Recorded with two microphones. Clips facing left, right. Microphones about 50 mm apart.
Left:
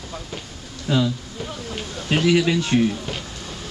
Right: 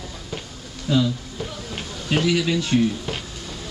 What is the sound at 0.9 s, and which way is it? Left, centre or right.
Speech, left.